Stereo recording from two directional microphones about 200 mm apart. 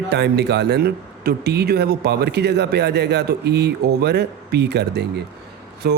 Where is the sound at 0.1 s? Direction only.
55° right (ahead or behind).